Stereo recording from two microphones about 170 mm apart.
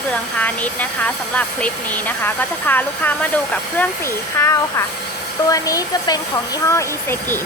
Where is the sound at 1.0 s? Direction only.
10° left (ahead or behind).